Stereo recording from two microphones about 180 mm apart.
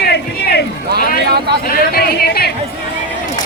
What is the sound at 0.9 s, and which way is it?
Speech, 65° right (ahead or behind).